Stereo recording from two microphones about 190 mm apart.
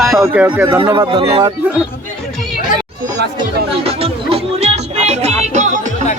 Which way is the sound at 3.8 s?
30° right (ahead or behind).